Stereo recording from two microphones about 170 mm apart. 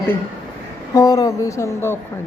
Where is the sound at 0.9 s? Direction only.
20° left (ahead or behind).